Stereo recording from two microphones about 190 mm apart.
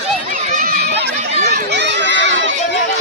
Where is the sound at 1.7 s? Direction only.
65° right (ahead or behind).